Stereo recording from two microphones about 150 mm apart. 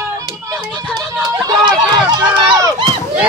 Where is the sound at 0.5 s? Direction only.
5° left (ahead or behind).